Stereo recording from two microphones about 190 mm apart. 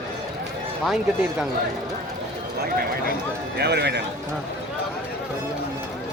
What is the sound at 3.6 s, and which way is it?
Speech, 60° right (ahead or behind).